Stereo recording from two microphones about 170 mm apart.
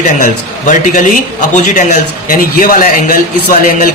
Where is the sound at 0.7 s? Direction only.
45° left (ahead or behind).